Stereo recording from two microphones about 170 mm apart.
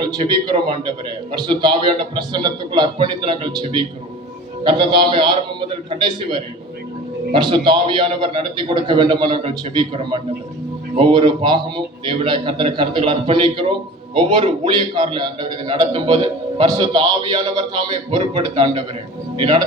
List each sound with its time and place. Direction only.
0.0 s a man's voice: 25° right (ahead or behind)